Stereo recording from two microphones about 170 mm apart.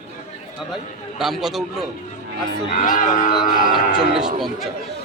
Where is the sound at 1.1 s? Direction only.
Centre (ahead or behind).